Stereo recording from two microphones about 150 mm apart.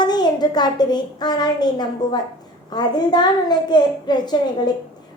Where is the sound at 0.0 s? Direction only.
30° left (ahead or behind).